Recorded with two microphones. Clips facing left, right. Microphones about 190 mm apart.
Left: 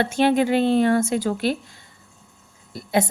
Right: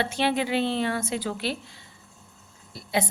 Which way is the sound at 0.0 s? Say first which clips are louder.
Left 7 dB; 45° left (ahead or behind).